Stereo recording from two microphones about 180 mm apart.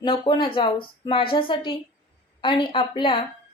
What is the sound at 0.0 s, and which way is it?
A woman's voice, 25° left (ahead or behind).